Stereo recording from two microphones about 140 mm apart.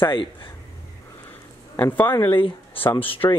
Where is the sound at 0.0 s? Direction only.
35° left (ahead or behind).